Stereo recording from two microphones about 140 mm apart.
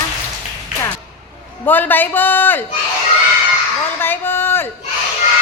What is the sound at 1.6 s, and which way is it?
A woman's voice, 15° left (ahead or behind).